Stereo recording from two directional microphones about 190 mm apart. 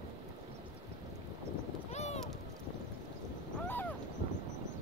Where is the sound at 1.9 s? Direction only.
35° left (ahead or behind).